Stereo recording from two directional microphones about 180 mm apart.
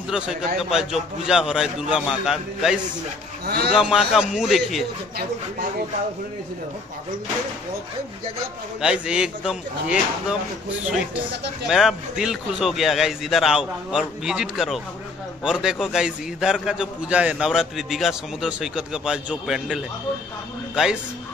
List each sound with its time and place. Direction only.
0.6 s a man's voice: centre (ahead or behind)
3.4 s a man's voice: 60° right (ahead or behind)
3.7 s a man's voice: 5° right (ahead or behind)
8.8 s a man's voice: 5° right (ahead or behind)
11.6 s a man's voice: centre (ahead or behind)